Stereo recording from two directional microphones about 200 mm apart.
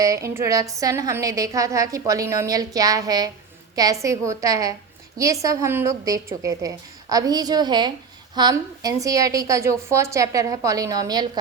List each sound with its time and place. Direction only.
0.0 s a woman's voice: 15° right (ahead or behind)